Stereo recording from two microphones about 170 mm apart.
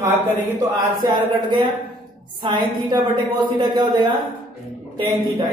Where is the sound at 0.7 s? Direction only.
25° right (ahead or behind).